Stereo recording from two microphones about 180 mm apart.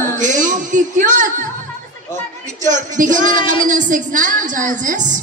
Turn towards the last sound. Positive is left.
turn(degrees=-45)  # may be behind; listen again after turning